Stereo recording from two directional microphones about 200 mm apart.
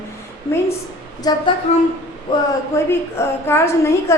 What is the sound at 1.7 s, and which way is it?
Speech, 35° left (ahead or behind).